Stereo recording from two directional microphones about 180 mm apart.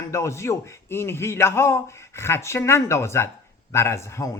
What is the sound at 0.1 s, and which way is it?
A man's voice, 15° left (ahead or behind).